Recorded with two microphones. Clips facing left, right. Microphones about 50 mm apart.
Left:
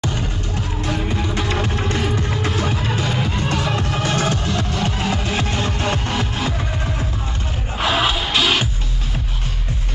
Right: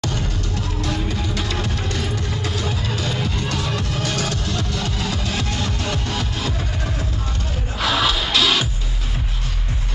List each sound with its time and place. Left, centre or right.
0.0 s music: left
7.8 s music: left